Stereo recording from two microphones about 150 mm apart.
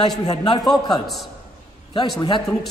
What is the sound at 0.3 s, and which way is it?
Speech, 25° left (ahead or behind).